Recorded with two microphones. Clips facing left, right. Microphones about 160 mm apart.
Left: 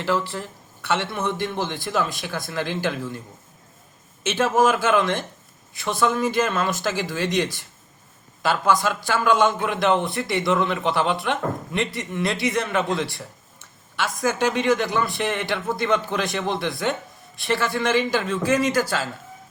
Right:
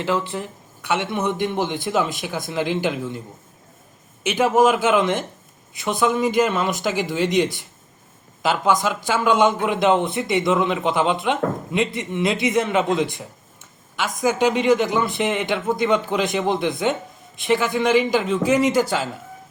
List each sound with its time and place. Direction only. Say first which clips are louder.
0.0 s a man's voice: right 1 dB; 20° right (ahead or behind)
4.2 s a man's voice: right 3 dB; 15° right (ahead or behind)